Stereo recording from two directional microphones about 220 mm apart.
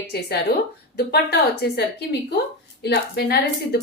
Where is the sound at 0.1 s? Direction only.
45° left (ahead or behind).